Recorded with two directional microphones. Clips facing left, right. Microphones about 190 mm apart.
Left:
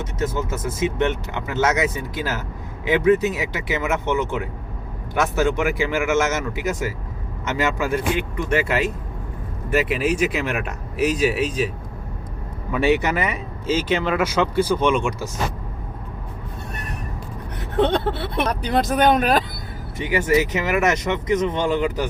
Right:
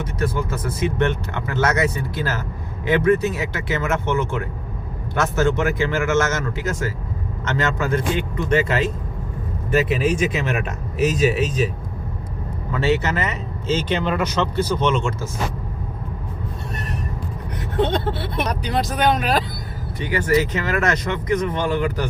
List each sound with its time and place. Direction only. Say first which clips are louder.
0.0 s speech: right 1 dB; 20° left (ahead or behind)
12.7 s speech: left 2 dB; 15° left (ahead or behind)
18.6 s speech: left 3 dB; 50° left (ahead or behind)
20.0 s speech: even; 20° left (ahead or behind)